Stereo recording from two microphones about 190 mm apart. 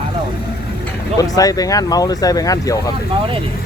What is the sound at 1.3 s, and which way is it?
Speech, 20° left (ahead or behind).